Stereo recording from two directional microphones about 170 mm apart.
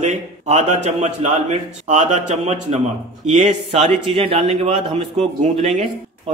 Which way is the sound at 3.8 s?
35° right (ahead or behind).